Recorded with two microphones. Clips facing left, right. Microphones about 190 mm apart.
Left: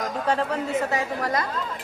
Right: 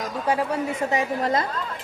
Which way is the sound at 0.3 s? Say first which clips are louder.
Right 2 dB; 10° right (ahead or behind).